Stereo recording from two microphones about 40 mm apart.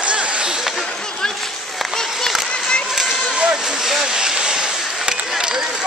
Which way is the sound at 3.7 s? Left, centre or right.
Centre.